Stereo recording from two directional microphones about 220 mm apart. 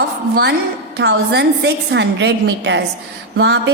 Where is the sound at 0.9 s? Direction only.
50° right (ahead or behind).